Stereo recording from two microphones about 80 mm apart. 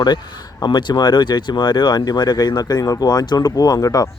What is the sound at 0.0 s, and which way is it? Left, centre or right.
A man's voice, left.